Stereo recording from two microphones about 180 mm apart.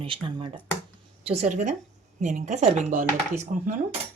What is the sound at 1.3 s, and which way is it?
Speech, 40° right (ahead or behind).